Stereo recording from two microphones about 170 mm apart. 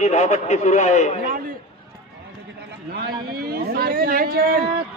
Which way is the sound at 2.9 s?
65° right (ahead or behind).